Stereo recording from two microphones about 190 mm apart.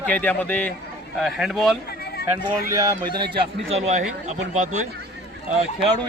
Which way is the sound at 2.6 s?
15° right (ahead or behind).